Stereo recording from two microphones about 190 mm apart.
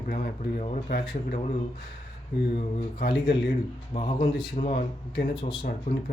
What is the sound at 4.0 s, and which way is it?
Speech, 30° left (ahead or behind).